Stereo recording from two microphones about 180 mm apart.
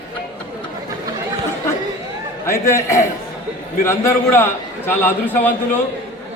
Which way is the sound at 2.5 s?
15° left (ahead or behind).